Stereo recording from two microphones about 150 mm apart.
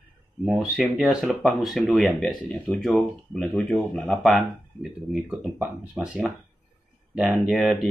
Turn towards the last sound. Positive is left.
turn(degrees=0)  # may be behind; listen again after turning